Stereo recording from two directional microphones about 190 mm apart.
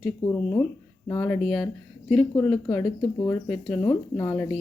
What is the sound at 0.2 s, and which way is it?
Speech, 30° left (ahead or behind).